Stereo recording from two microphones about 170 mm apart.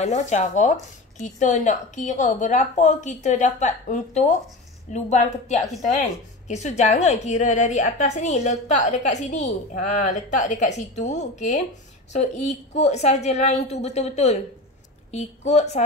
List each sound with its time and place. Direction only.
0.0 s a woman's voice: 45° left (ahead or behind)